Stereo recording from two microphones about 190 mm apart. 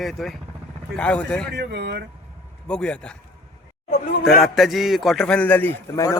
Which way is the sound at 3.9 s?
50° left (ahead or behind).